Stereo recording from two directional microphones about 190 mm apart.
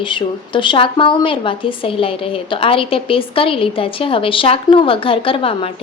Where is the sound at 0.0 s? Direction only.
25° left (ahead or behind).